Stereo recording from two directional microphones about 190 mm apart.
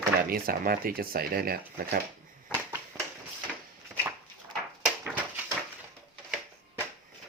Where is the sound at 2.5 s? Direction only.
15° right (ahead or behind).